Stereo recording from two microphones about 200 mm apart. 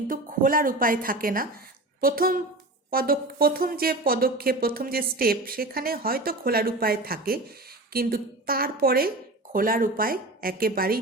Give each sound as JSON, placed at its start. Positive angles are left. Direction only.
{"t": 0.1, "sound": "speech", "side_deg": -45}